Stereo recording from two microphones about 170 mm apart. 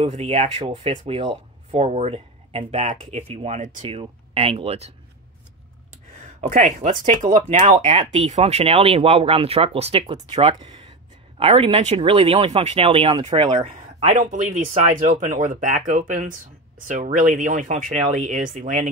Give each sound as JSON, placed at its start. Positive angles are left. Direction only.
{"t": 0.0, "sound": "speech", "side_deg": -35}
{"t": 3.8, "sound": "speech", "side_deg": -30}
{"t": 6.5, "sound": "speech", "side_deg": -50}